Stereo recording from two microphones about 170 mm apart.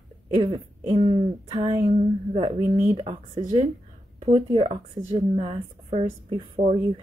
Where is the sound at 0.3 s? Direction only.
30° right (ahead or behind).